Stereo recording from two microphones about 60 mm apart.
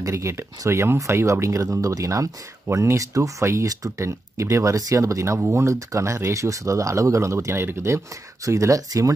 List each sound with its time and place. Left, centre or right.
0.0 s speech: right
8.5 s speech: right